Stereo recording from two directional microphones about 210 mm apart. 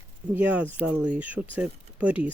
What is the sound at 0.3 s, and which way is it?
Speech, 10° right (ahead or behind).